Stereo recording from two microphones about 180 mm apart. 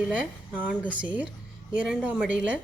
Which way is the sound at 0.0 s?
5° right (ahead or behind).